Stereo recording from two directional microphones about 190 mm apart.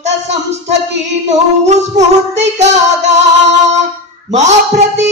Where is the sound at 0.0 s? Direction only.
35° right (ahead or behind).